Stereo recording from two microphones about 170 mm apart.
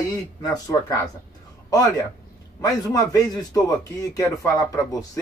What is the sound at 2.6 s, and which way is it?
A man's voice, 20° left (ahead or behind).